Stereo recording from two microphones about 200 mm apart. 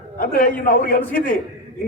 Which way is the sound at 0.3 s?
45° left (ahead or behind).